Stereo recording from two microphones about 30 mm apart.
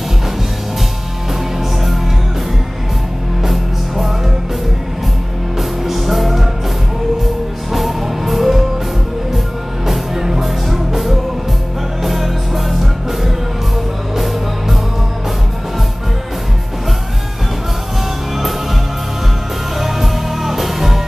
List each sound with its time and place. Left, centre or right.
3.4 s music: centre
5.6 s music: centre
7.7 s music: centre
9.8 s music: centre
14.1 s music: centre
19.8 s music: centre